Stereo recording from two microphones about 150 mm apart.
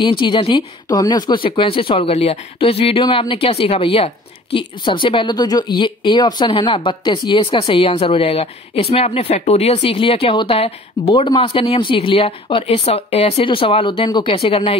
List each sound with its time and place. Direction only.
0.2 s speech: 30° left (ahead or behind)